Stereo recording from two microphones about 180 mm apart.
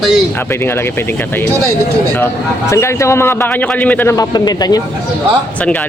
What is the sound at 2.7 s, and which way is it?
A man's voice, 15° left (ahead or behind).